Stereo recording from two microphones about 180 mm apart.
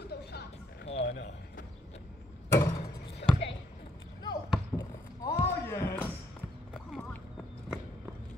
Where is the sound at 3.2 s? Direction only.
75° left (ahead or behind).